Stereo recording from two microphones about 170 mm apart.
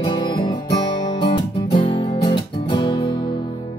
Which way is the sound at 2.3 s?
25° left (ahead or behind).